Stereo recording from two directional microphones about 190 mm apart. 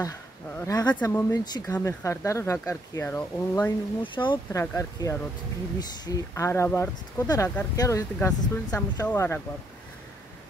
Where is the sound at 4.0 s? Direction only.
25° left (ahead or behind).